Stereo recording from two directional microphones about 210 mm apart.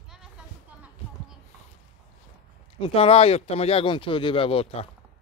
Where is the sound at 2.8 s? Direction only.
25° left (ahead or behind).